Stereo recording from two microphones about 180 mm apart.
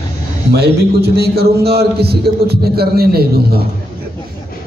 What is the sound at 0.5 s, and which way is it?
A man's voice, 65° right (ahead or behind).